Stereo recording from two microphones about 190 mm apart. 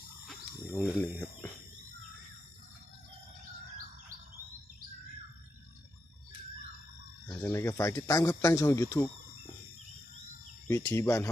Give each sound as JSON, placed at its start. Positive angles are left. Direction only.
{"t": 0.3, "sound": "a sound", "side_deg": 5}
{"t": 7.3, "sound": "speech", "side_deg": 15}
{"t": 10.7, "sound": "speech", "side_deg": 15}